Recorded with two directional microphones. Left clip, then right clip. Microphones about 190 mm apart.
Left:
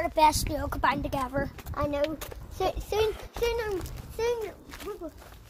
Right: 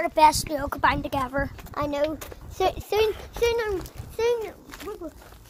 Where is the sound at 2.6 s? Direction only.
50° right (ahead or behind).